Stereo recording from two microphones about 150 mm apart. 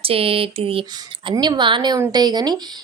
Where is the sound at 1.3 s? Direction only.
25° right (ahead or behind).